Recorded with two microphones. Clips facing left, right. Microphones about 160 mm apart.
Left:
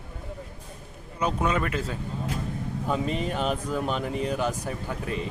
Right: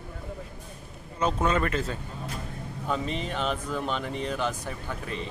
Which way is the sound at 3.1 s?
45° left (ahead or behind).